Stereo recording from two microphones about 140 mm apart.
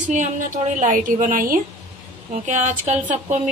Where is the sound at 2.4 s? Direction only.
60° right (ahead or behind).